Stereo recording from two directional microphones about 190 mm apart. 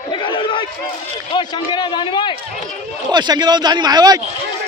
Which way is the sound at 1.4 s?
25° left (ahead or behind).